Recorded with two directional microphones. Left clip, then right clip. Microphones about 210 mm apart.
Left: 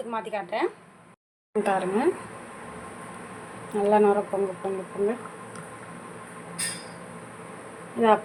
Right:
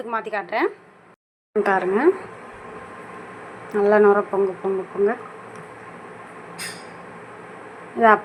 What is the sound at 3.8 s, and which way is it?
Speech, 15° right (ahead or behind).